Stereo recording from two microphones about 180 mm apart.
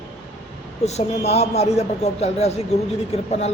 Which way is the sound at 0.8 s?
35° left (ahead or behind).